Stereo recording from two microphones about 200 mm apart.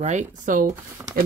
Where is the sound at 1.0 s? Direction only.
15° right (ahead or behind).